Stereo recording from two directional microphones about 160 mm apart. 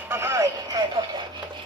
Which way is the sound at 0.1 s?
15° right (ahead or behind).